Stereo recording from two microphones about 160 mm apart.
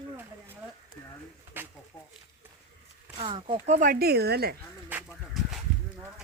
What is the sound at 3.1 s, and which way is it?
Speech, 30° right (ahead or behind).